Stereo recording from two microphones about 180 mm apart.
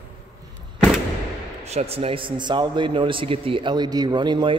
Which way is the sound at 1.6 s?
35° right (ahead or behind).